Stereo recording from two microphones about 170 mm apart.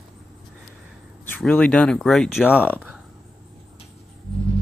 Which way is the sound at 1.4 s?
5° left (ahead or behind).